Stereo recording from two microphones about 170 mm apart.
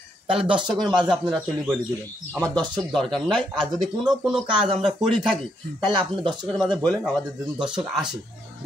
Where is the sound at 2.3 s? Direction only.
20° right (ahead or behind).